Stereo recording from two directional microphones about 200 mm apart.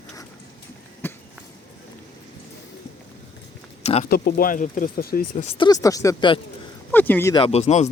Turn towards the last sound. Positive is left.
turn(degrees=35)  # may be behind; listen again after turning